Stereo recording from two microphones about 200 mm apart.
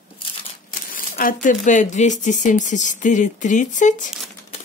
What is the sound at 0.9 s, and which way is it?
Speech, 45° left (ahead or behind).